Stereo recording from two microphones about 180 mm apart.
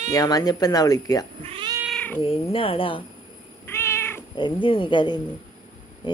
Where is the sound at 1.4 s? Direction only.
30° right (ahead or behind).